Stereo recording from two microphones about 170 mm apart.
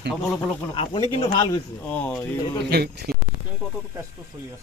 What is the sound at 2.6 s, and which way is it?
Speech, 70° right (ahead or behind).